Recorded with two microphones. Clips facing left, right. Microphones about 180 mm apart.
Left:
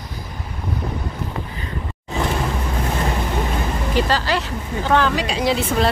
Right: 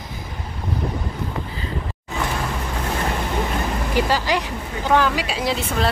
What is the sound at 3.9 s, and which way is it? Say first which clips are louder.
Speech: even; 10° right (ahead or behind).